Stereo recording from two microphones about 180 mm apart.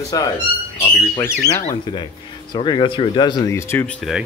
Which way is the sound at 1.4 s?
20° left (ahead or behind).